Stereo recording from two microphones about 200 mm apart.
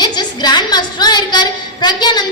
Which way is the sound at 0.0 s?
20° left (ahead or behind).